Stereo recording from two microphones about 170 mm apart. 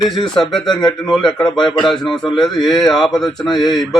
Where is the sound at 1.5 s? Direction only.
25° left (ahead or behind).